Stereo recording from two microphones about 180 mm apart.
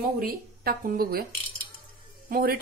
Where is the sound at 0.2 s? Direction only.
55° right (ahead or behind).